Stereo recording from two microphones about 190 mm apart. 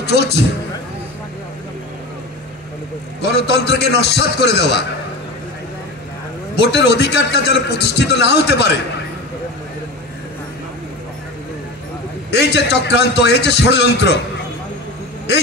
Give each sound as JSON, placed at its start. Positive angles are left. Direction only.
{"t": 0.0, "sound": "a man's voice", "side_deg": 60}
{"t": 3.3, "sound": "a man's voice", "side_deg": 60}
{"t": 6.5, "sound": "a man's voice", "side_deg": 65}
{"t": 12.3, "sound": "a man's voice", "side_deg": 65}